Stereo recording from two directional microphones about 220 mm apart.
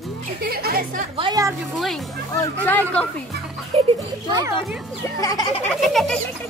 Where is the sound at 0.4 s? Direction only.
45° right (ahead or behind).